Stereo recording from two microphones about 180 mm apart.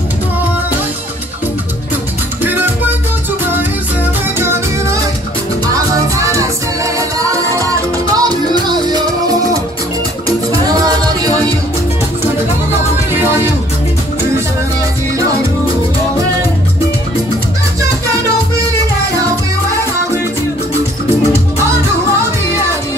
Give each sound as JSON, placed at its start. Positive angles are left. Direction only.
{"t": 2.4, "sound": "music", "side_deg": -10}
{"t": 5.9, "sound": "music", "side_deg": -15}
{"t": 13.1, "sound": "music", "side_deg": -10}